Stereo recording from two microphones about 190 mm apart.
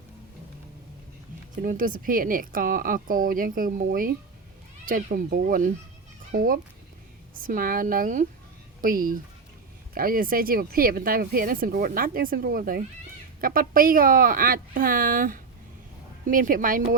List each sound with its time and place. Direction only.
1.6 s speech: 45° right (ahead or behind)